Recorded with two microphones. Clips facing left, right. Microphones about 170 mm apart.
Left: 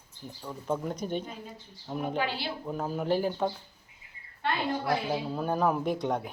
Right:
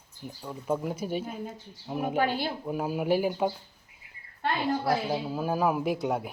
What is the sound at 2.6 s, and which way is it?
Speech, 10° right (ahead or behind).